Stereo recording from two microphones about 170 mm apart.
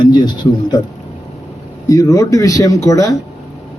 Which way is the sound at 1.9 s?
20° left (ahead or behind).